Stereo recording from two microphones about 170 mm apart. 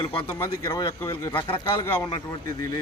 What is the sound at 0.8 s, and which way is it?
A man's voice, 25° left (ahead or behind).